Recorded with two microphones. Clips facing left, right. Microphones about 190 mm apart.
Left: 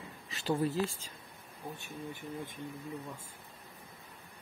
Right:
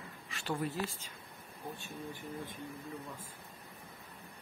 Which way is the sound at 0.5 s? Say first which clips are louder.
Left 5 dB; 25° left (ahead or behind).